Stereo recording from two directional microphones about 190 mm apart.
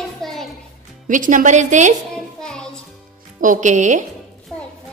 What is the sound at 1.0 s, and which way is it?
Speech, 45° right (ahead or behind).